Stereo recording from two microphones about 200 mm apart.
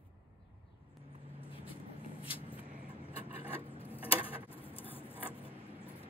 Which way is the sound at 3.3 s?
30° left (ahead or behind).